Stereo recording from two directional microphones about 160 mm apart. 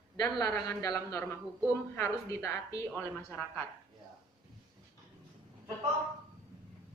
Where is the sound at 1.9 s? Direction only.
15° left (ahead or behind).